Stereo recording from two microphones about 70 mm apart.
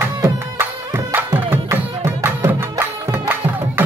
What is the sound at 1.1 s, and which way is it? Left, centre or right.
Music, right.